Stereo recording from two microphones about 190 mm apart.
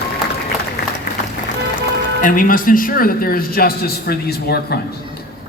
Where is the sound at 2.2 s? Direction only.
45° left (ahead or behind).